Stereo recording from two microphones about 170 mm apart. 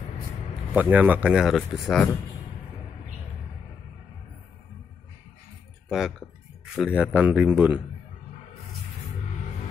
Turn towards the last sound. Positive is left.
turn(degrees=-10)  # may be behind; listen again after turning